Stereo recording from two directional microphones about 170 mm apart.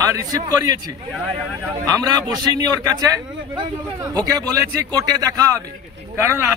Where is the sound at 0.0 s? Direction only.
20° right (ahead or behind).